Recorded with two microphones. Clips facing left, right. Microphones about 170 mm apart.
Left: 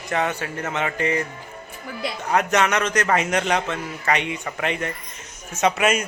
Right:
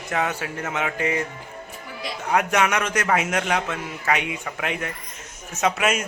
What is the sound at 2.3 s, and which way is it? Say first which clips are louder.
A man's voice: left 1 dB; 10° right (ahead or behind).